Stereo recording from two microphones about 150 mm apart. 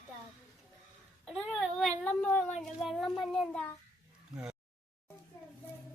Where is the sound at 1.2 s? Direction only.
Centre (ahead or behind).